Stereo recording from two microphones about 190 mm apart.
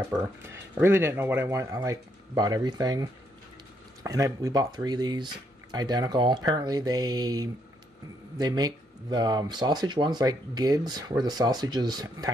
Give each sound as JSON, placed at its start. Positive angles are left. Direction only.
{"t": 0.7, "sound": "speech", "side_deg": -10}